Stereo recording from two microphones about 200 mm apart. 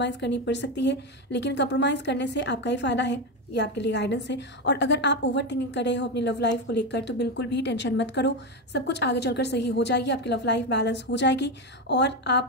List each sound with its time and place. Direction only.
0.0 s a woman's voice: 60° left (ahead or behind)